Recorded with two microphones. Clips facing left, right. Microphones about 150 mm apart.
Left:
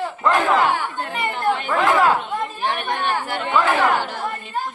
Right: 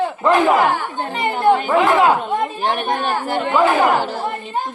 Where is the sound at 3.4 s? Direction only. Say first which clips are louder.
Right 4 dB; 5° right (ahead or behind).